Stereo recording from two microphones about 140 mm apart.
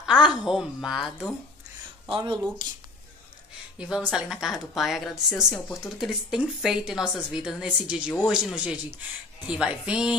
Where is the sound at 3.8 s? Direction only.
5° right (ahead or behind).